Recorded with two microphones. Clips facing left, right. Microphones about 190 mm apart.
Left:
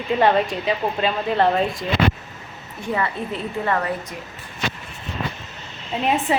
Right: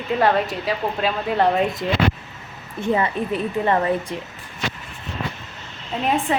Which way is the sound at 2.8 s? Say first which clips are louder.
Right 4 dB; 20° right (ahead or behind).